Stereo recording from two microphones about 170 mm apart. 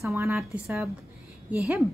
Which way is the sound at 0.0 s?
15° right (ahead or behind).